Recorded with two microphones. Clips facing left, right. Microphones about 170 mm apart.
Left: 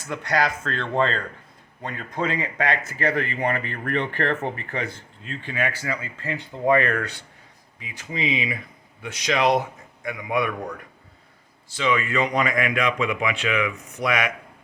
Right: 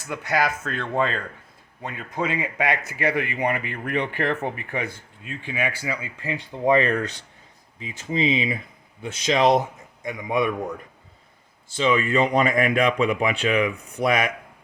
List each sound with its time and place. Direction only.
0.1 s speech: 5° right (ahead or behind); by 14.3 s 30° right (ahead or behind)